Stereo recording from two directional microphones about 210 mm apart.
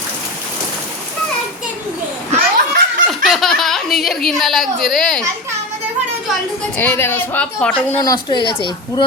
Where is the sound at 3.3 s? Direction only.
Centre (ahead or behind).